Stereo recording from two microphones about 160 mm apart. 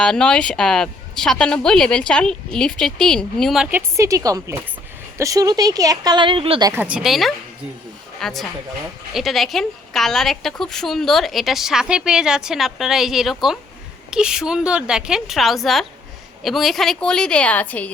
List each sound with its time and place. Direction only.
0.0 s a woman's voice: 5° left (ahead or behind)
3.7 s speech: 15° right (ahead or behind); by 6.7 s 35° right (ahead or behind)
6.7 s a woman's voice: 10° right (ahead or behind); by 17.9 s 10° left (ahead or behind)